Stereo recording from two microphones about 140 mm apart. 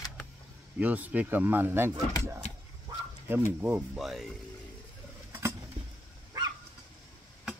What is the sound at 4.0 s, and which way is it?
Speech, centre (ahead or behind).